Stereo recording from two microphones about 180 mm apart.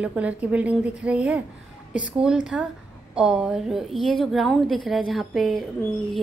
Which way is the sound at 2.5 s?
5° right (ahead or behind).